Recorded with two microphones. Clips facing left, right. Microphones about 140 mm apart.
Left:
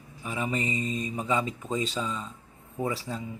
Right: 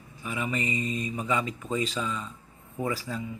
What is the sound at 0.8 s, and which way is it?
Mantra, 5° right (ahead or behind).